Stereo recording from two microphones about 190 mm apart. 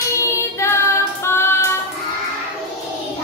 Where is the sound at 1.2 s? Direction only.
15° left (ahead or behind).